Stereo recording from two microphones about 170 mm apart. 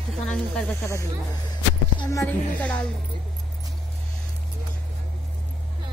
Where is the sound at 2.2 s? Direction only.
10° left (ahead or behind).